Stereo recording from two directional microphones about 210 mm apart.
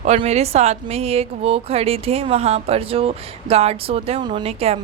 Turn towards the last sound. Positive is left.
turn(degrees=-30)  # may be behind; listen again after turning